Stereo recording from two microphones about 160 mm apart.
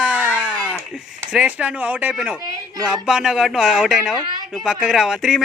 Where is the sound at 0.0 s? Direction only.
10° right (ahead or behind).